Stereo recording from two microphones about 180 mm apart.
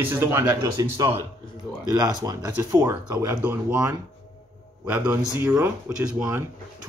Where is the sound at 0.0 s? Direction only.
10° right (ahead or behind).